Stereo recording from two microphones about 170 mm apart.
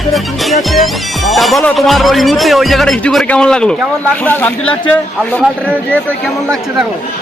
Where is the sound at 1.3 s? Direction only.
Centre (ahead or behind).